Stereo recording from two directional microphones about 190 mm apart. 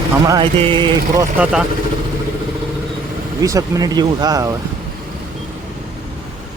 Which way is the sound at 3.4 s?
15° right (ahead or behind).